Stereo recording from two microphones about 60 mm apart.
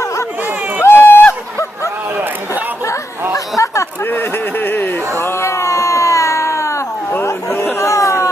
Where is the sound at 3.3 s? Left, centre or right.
Left.